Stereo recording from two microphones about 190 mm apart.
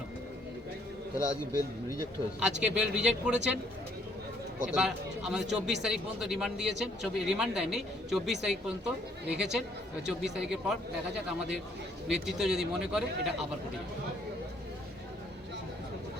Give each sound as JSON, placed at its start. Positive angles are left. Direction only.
{"t": 1.1, "sound": "a man's voice", "side_deg": 15}
{"t": 2.4, "sound": "speech", "side_deg": -5}
{"t": 4.7, "sound": "speech", "side_deg": -5}
{"t": 12.0, "sound": "speech", "side_deg": 0}